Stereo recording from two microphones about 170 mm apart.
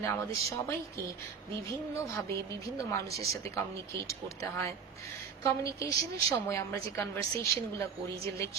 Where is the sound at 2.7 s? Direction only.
20° left (ahead or behind).